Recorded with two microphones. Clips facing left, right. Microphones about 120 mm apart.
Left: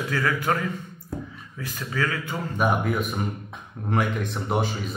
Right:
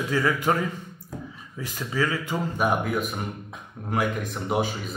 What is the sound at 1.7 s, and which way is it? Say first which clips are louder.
Speech: right 1 dB; 15° right (ahead or behind).